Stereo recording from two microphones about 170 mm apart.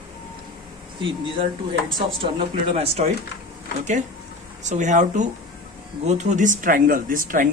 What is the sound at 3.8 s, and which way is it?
Speech, 45° right (ahead or behind).